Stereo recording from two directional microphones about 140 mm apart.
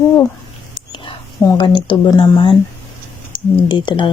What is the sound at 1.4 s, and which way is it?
Speech, 35° left (ahead or behind).